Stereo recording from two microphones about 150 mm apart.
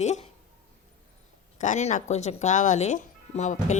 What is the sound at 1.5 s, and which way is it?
Speech, 55° left (ahead or behind).